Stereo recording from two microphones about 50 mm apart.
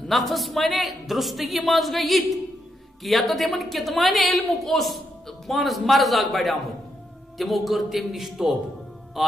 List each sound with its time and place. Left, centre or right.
0.1 s a woman's voice: centre